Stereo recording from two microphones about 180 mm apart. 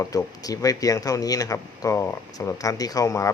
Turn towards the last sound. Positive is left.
turn(degrees=15)  # may be behind; listen again after turning